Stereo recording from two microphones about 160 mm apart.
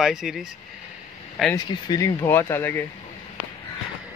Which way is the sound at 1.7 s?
25° left (ahead or behind).